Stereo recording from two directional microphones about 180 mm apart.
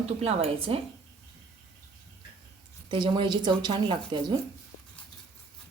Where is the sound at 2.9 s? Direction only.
25° right (ahead or behind).